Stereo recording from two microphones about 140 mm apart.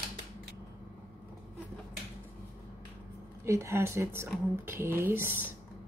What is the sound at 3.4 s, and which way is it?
Speech, 20° right (ahead or behind).